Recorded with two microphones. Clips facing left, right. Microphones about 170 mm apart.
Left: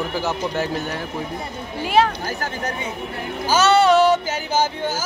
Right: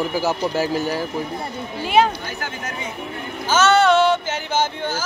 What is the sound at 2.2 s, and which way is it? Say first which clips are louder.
Speech: left 4 dB; 40° left (ahead or behind).